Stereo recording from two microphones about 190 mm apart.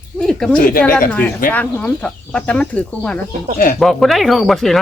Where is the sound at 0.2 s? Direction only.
5° left (ahead or behind).